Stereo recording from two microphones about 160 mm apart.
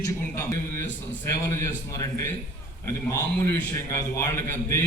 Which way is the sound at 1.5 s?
20° left (ahead or behind).